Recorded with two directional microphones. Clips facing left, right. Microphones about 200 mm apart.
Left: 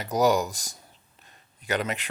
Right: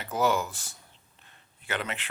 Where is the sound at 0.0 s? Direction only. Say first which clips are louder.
Left 4 dB; 40° left (ahead or behind).